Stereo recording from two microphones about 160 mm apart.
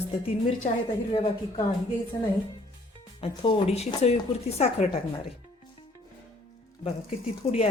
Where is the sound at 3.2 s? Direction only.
35° left (ahead or behind).